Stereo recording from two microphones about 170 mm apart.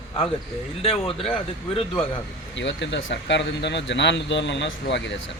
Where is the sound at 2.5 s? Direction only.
90° left.